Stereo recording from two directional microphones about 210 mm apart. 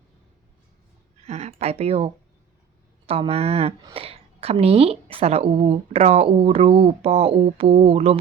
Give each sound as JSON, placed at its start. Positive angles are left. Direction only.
{"t": 1.2, "sound": "speech", "side_deg": -30}
{"t": 3.1, "sound": "a woman's voice", "side_deg": -30}